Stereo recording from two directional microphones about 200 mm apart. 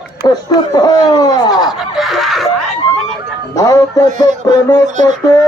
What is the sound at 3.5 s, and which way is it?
Speech, 15° left (ahead or behind).